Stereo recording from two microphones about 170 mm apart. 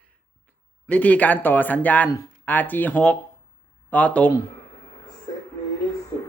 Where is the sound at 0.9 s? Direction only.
10° left (ahead or behind).